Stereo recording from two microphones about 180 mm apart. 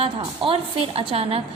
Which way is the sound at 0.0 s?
30° right (ahead or behind).